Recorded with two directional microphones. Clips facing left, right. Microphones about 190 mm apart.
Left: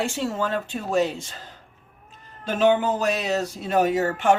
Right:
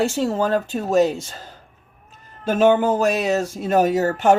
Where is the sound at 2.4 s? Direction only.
45° right (ahead or behind).